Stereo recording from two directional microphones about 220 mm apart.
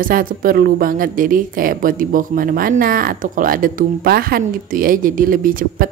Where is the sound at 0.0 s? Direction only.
40° right (ahead or behind).